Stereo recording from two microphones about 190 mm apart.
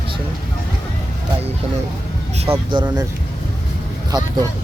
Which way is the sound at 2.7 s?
25° right (ahead or behind).